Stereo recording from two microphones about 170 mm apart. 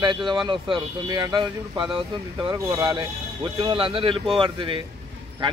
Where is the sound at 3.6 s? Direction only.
30° right (ahead or behind).